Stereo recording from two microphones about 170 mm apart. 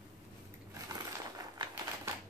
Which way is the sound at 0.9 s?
20° right (ahead or behind).